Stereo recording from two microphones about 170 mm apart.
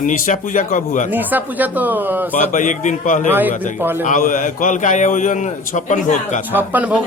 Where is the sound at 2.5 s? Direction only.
50° left (ahead or behind).